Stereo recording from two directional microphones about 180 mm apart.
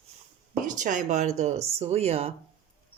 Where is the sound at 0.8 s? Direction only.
45° right (ahead or behind).